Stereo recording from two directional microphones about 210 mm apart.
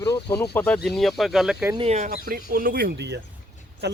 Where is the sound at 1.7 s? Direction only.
30° right (ahead or behind).